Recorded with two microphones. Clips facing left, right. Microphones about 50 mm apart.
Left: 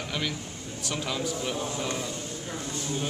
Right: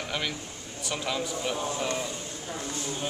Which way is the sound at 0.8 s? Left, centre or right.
Centre.